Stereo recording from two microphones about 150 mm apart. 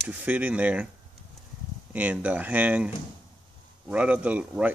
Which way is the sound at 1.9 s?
10° right (ahead or behind).